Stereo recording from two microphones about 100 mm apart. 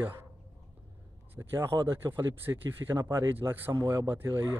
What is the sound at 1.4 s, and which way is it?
Speech, 25° right (ahead or behind).